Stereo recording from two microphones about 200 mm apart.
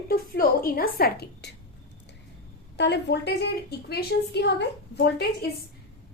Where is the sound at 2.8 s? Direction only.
55° left (ahead or behind).